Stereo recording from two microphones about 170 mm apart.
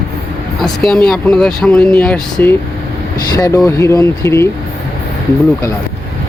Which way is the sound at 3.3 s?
20° left (ahead or behind).